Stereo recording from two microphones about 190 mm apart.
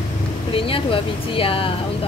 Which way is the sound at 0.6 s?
30° left (ahead or behind).